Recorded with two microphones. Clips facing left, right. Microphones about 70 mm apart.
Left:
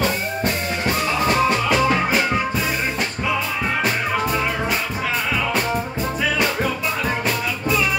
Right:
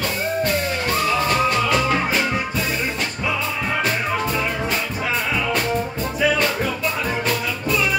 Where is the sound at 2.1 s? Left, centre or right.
Centre.